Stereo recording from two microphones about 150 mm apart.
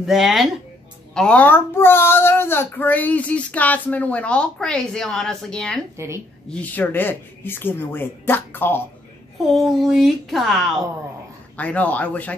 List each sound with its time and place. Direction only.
0.0 s speech: centre (ahead or behind)
5.9 s speech: 20° right (ahead or behind)
6.5 s speech: 10° left (ahead or behind)
9.5 s speech: centre (ahead or behind)